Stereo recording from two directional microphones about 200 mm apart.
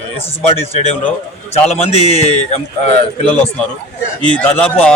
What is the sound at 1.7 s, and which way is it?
Speech, 30° left (ahead or behind).